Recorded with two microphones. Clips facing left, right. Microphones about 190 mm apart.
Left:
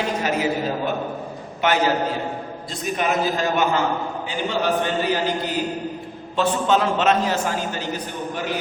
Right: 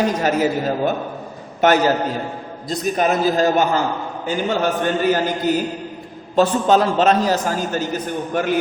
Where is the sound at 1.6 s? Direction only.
45° right (ahead or behind).